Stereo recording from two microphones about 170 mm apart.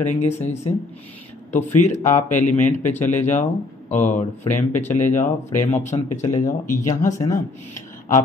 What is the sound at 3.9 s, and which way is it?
A man's voice, 45° left (ahead or behind).